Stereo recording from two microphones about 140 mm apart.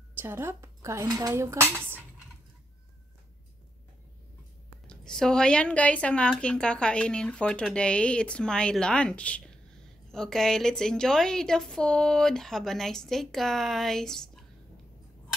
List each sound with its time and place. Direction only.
0.2 s dishes: 15° right (ahead or behind)
4.8 s a woman's voice: 5° left (ahead or behind)